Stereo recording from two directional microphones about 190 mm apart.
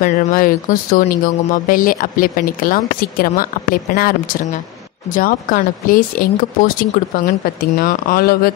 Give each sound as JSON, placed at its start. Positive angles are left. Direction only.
{"t": 0.0, "sound": "speech", "side_deg": 45}